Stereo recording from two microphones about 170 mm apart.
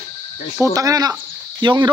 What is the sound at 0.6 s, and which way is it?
Speech, 20° right (ahead or behind).